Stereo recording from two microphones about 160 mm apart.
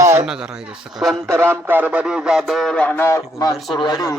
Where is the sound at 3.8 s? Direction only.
25° left (ahead or behind).